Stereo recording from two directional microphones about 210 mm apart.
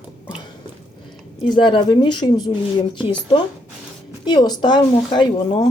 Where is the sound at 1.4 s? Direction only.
25° left (ahead or behind).